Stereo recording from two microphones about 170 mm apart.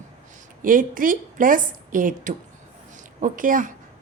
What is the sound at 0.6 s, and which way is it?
A woman's voice, 55° right (ahead or behind).